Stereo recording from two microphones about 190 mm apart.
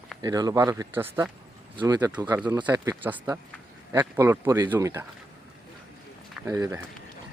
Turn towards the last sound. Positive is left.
turn(degrees=-15)  # may be behind; listen again after turning